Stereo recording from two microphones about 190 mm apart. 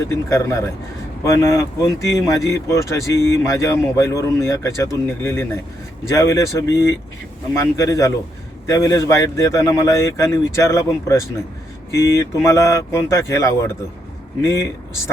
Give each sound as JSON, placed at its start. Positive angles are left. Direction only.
{"t": 0.1, "sound": "speech", "side_deg": 15}